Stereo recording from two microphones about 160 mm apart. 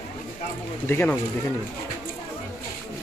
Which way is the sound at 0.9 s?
10° left (ahead or behind).